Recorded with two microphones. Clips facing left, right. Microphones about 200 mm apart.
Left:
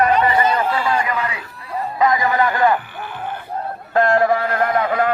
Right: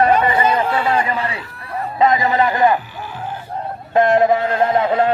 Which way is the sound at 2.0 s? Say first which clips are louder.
Right 2 dB; 25° right (ahead or behind).